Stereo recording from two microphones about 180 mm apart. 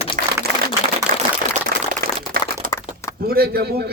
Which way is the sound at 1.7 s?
55° right (ahead or behind).